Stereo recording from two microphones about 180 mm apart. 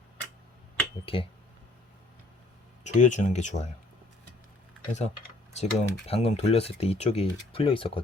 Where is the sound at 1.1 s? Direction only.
30° left (ahead or behind).